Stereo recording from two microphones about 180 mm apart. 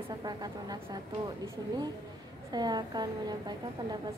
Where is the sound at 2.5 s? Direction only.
25° right (ahead or behind).